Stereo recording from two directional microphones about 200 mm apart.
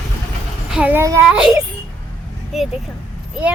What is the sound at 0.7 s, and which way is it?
Speech, 10° right (ahead or behind).